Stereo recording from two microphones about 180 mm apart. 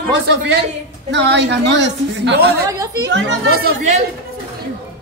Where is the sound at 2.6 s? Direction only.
20° right (ahead or behind).